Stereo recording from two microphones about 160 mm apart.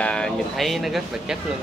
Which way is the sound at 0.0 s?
5° left (ahead or behind).